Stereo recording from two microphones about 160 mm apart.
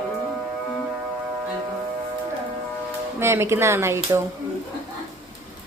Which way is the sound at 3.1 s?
15° right (ahead or behind).